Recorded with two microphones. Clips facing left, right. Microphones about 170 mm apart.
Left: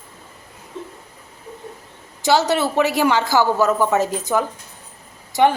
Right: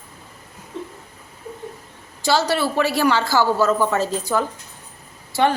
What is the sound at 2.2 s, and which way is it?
A woman's voice, 20° left (ahead or behind).